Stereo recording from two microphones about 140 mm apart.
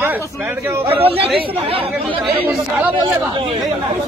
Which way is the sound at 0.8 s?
40° right (ahead or behind).